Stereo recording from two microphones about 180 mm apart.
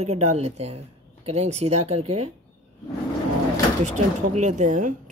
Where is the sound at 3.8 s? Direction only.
40° right (ahead or behind).